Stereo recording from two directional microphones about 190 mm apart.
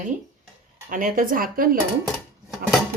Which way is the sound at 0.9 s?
45° right (ahead or behind).